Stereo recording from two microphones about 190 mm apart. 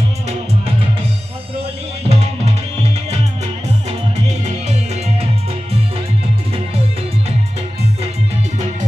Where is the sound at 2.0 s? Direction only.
35° right (ahead or behind).